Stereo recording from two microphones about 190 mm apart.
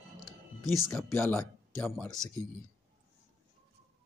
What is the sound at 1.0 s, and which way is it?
A man's voice, 10° left (ahead or behind).